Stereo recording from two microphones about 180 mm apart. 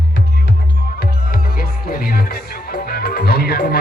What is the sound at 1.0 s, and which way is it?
Music, 55° left (ahead or behind).